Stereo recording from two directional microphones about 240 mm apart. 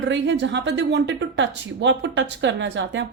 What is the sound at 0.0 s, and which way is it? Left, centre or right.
A woman's voice, right.